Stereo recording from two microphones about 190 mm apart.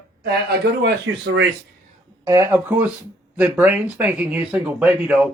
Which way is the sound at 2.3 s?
10° right (ahead or behind).